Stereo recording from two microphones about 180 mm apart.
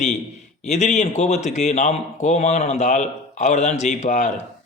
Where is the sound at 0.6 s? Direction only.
40° left (ahead or behind).